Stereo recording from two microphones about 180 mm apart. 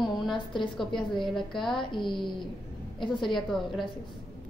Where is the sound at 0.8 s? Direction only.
25° left (ahead or behind).